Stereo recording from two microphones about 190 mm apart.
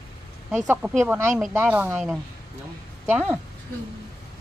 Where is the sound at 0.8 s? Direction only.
5° right (ahead or behind).